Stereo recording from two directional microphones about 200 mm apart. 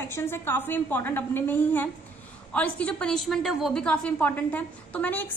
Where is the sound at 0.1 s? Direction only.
10° left (ahead or behind).